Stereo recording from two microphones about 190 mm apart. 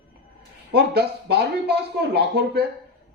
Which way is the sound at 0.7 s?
60° right (ahead or behind).